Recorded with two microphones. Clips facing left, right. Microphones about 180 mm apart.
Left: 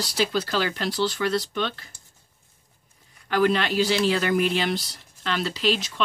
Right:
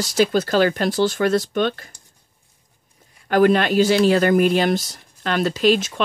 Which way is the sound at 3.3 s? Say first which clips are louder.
Right 6 dB; 50° right (ahead or behind).